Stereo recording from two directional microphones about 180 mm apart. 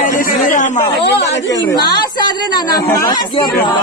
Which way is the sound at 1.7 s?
20° left (ahead or behind).